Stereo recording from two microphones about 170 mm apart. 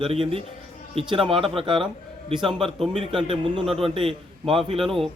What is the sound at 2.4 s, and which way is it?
Speech, centre (ahead or behind).